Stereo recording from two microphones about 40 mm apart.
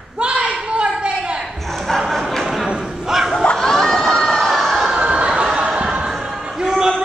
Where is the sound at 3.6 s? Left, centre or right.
Centre.